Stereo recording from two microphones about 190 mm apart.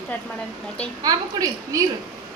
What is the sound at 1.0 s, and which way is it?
Speech, 20° right (ahead or behind).